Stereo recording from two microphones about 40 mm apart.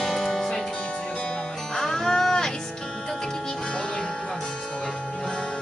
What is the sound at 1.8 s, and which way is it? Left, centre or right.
Music, centre.